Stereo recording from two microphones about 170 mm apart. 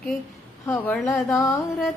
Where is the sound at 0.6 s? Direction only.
10° left (ahead or behind).